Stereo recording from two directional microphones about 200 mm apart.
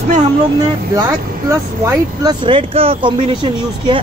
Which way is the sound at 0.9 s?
20° right (ahead or behind).